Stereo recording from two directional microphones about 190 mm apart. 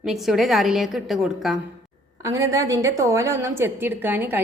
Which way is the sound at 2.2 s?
15° right (ahead or behind).